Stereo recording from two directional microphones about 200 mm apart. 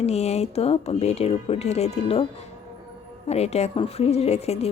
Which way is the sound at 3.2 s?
30° left (ahead or behind).